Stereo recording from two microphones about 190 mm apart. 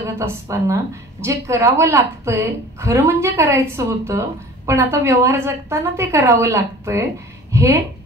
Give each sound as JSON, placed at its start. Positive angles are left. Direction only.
{"t": 0.0, "sound": "a woman's voice", "side_deg": -15}